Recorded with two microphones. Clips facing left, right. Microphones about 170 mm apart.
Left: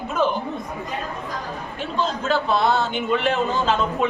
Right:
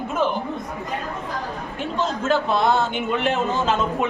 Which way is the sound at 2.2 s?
15° right (ahead or behind).